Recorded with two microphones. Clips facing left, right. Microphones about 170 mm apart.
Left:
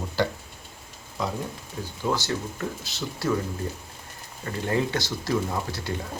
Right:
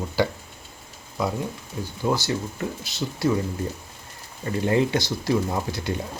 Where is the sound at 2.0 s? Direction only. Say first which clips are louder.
Right 3 dB; 5° right (ahead or behind).